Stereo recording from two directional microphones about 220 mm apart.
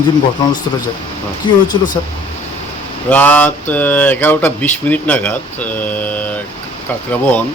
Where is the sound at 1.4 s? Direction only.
20° left (ahead or behind).